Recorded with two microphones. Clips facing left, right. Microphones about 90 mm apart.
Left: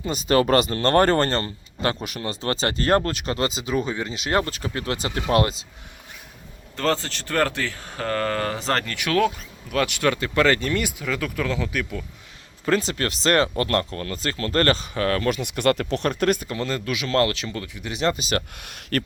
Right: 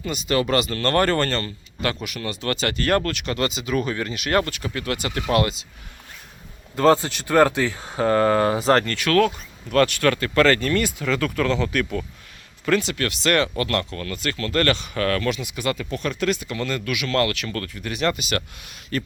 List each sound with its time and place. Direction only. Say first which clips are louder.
0.0 s speech: left 3 dB; 35° left (ahead or behind)
6.7 s speech: right 7 dB; 15° right (ahead or behind)
9.0 s speech: right 2 dB; 15° left (ahead or behind)
12.6 s speech: right 1 dB; 30° left (ahead or behind)
15.3 s speech: left 4 dB; 55° left (ahead or behind)
16.0 s speech: left 1 dB; 45° left (ahead or behind)
16.6 s speech: even; 30° left (ahead or behind)
17.5 s speech: right 2 dB; 15° left (ahead or behind)
17.9 s speech: even; 30° left (ahead or behind)
18.5 s speech: left 2 dB; 60° left (ahead or behind)